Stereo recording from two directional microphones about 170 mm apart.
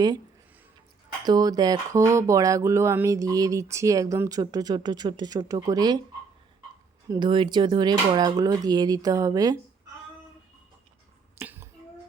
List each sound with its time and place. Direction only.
1.2 s speech: 20° right (ahead or behind)
7.1 s speech: 30° right (ahead or behind)
11.3 s finger snapping: 15° right (ahead or behind)